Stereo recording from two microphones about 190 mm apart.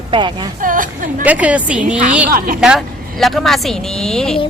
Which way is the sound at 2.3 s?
50° right (ahead or behind).